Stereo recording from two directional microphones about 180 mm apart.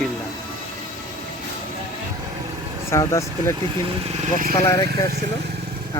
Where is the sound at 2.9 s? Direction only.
15° left (ahead or behind).